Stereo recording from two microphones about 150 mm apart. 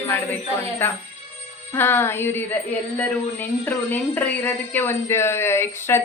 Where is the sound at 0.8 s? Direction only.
15° left (ahead or behind).